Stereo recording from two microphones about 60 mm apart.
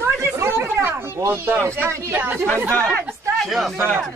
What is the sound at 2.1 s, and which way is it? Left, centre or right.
Speech, right.